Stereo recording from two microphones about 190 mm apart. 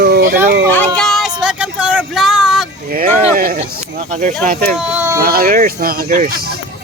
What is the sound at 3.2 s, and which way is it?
Speech, 40° right (ahead or behind).